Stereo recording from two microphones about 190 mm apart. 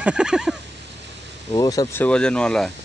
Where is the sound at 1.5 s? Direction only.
20° left (ahead or behind).